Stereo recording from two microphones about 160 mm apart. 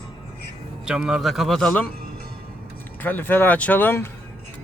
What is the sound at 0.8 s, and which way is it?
Speech, 5° right (ahead or behind).